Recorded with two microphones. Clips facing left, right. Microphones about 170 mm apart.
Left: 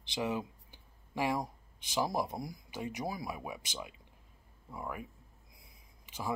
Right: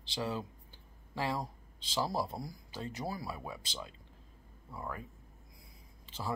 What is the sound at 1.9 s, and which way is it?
Speech, 15° left (ahead or behind).